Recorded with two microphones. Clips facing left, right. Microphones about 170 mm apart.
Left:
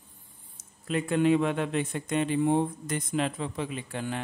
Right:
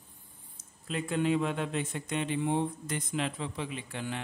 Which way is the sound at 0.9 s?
65° left (ahead or behind).